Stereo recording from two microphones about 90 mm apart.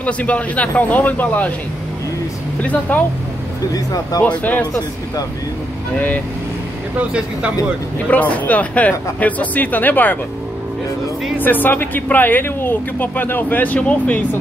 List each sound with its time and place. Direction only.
0.0 s speech: 15° left (ahead or behind)
2.6 s speech: 15° left (ahead or behind)
3.7 s speech: 45° left (ahead or behind)
4.4 s speech: 15° left (ahead or behind)
5.9 s speech: 20° left (ahead or behind)
7.0 s speech: 15° right (ahead or behind)
8.1 s speech: 15° left (ahead or behind)
11.3 s speech: 20° left (ahead or behind)